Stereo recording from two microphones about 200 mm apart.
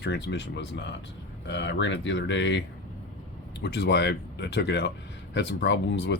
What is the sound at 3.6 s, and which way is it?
Speech, 55° left (ahead or behind).